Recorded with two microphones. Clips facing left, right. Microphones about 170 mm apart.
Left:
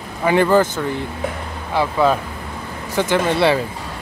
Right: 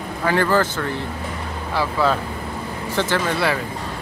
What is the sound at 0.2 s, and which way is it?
Speech, 15° left (ahead or behind).